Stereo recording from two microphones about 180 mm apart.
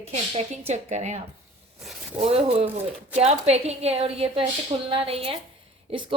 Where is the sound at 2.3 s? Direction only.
30° right (ahead or behind).